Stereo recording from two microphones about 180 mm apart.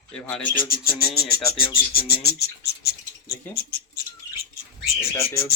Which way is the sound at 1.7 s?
55° left (ahead or behind).